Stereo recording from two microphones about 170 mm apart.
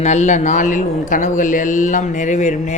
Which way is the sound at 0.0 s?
45° left (ahead or behind).